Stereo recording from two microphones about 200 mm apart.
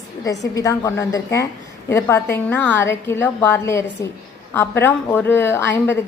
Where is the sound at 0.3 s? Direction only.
15° left (ahead or behind).